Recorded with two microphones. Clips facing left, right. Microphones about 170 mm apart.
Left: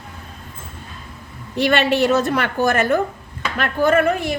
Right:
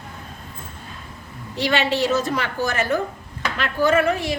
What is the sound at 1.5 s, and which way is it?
A woman's voice, 55° left (ahead or behind).